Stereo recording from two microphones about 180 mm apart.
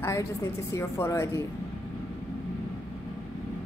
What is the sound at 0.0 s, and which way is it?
Speech, 15° left (ahead or behind).